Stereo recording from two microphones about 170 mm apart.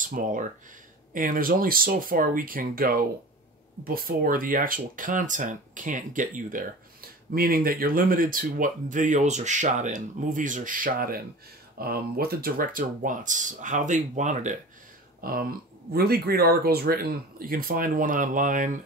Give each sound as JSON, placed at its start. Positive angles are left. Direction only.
{"t": 0.0, "sound": "speech", "side_deg": -50}
{"t": 15.2, "sound": "speech", "side_deg": -60}